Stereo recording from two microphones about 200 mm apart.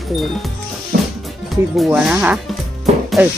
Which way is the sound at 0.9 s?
50° right (ahead or behind).